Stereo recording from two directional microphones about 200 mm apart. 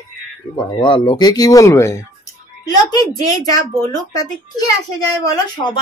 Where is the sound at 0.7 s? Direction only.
25° left (ahead or behind).